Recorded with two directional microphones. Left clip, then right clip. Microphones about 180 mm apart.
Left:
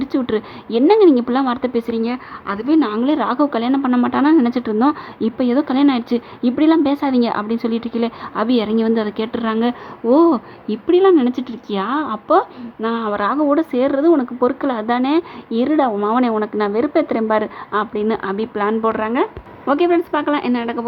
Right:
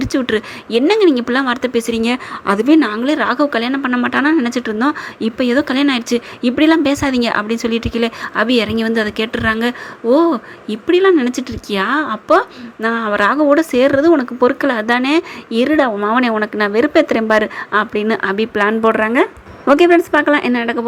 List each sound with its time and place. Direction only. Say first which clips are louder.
0.0 s a woman's voice: right 3 dB; 5° right (ahead or behind)
2.0 s a woman's voice: right 4 dB; 20° right (ahead or behind)